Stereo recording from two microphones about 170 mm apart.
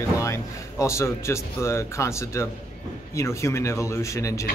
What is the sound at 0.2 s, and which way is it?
A man's voice, 15° left (ahead or behind).